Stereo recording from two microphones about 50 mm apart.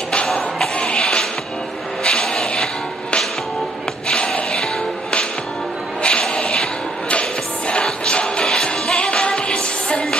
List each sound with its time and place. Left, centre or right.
0.1 s music: centre
4.3 s music: centre
6.0 s music: centre